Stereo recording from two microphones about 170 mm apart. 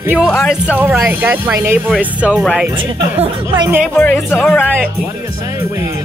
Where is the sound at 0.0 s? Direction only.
10° right (ahead or behind).